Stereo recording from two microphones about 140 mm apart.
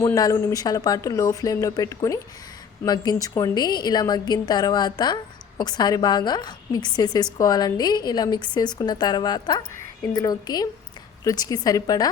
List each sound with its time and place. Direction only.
0.0 s a woman's voice: 25° left (ahead or behind)